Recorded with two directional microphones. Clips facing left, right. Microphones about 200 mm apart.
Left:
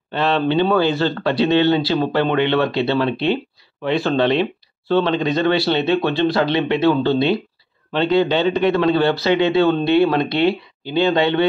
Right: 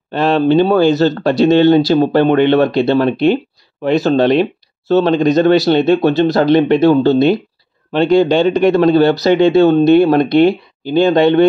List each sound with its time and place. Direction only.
0.1 s speech: 45° right (ahead or behind)